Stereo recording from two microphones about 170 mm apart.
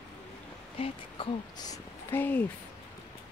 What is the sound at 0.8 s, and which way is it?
Speech, 25° left (ahead or behind).